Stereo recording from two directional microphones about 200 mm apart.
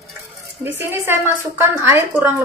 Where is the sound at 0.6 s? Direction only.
10° right (ahead or behind).